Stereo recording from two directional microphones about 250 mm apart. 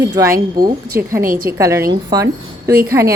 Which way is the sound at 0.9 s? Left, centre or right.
Right.